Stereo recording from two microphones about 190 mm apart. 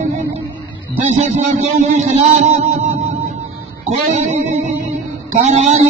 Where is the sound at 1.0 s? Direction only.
35° right (ahead or behind).